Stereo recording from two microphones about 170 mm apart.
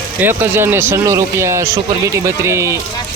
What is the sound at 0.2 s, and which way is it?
Speech, 10° right (ahead or behind).